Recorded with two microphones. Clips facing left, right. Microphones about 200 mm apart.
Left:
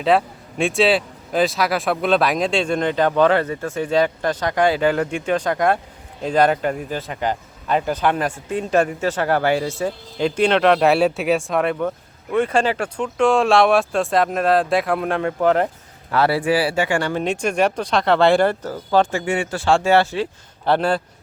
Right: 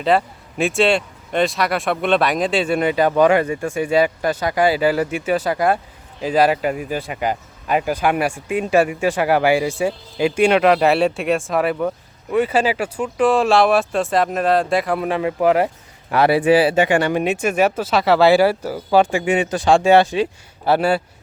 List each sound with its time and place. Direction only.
0.0 s speech: centre (ahead or behind)